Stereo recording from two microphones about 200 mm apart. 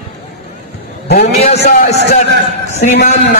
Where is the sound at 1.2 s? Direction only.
35° left (ahead or behind).